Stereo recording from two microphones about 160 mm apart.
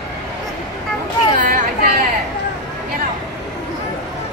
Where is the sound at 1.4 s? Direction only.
55° right (ahead or behind).